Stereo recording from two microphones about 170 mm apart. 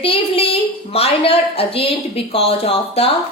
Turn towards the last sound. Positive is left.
turn(degrees=35)  # may be behind; listen again after turning